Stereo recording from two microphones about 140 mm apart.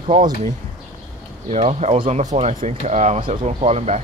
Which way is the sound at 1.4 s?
50° right (ahead or behind).